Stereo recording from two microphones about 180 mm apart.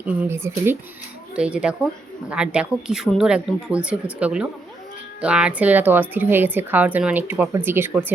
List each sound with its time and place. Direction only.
0.0 s a woman's voice: 15° right (ahead or behind)